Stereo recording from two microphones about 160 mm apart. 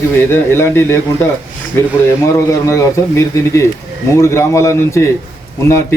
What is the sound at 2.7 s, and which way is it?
A man's voice, 20° left (ahead or behind).